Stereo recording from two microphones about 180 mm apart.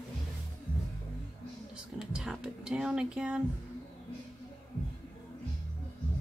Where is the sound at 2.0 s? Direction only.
5° right (ahead or behind).